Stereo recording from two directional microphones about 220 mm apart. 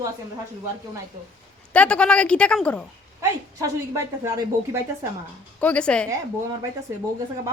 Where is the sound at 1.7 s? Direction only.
5° left (ahead or behind).